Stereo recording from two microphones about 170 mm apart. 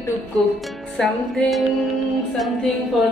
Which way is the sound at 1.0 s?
Centre (ahead or behind).